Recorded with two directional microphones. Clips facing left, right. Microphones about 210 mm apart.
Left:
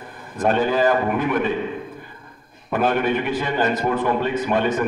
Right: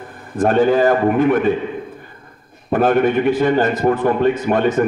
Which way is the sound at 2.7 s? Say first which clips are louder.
Right 6 dB; 45° right (ahead or behind).